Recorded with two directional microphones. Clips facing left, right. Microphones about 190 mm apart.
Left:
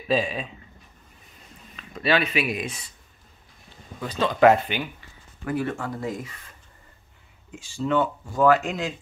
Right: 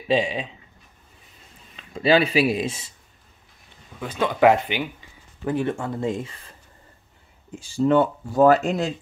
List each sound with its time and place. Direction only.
0.1 s speech: 25° right (ahead or behind)
1.8 s speech: 30° right (ahead or behind)
4.0 s speech: 10° right (ahead or behind)
5.4 s speech: 25° right (ahead or behind)
7.5 s speech: 40° right (ahead or behind)